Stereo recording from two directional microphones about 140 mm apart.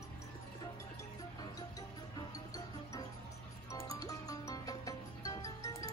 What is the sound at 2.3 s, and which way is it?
Music, 25° left (ahead or behind).